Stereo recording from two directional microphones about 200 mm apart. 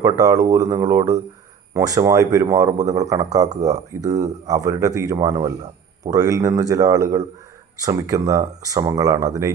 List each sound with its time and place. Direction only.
0.0 s speech: 15° right (ahead or behind)